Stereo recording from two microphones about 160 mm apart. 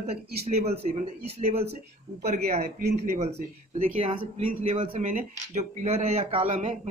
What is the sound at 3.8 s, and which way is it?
A man's voice, 35° right (ahead or behind).